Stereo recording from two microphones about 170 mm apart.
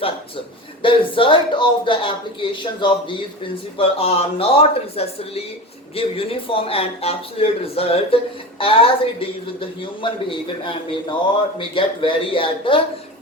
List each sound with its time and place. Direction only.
0.8 s speech: 30° left (ahead or behind)
11.5 s speech: 30° left (ahead or behind)